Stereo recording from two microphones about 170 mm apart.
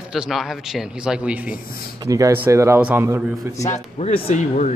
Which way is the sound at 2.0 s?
20° right (ahead or behind).